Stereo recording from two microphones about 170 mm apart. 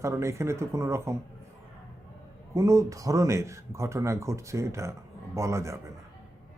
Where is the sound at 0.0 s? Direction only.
15° right (ahead or behind).